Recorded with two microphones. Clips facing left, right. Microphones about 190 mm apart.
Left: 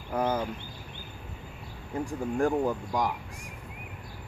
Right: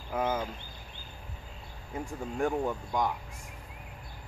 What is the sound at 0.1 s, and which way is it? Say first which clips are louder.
Speech: left 3 dB; centre (ahead or behind).